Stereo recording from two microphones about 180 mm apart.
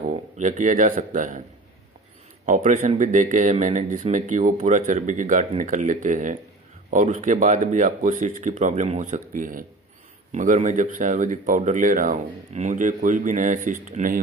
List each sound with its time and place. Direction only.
0.1 s speech: 40° right (ahead or behind)
2.4 s speech: 45° right (ahead or behind)